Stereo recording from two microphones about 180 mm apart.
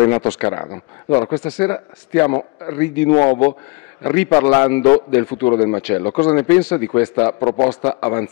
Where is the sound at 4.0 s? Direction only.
15° left (ahead or behind).